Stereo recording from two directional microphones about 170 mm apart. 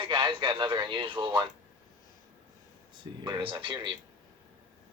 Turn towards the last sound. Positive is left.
turn(degrees=-30)  # may be behind; listen again after turning